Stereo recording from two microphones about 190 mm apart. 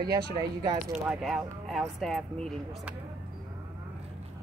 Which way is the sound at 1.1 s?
Centre (ahead or behind).